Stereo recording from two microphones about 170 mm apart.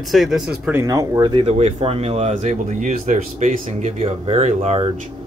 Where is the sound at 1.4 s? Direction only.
40° right (ahead or behind).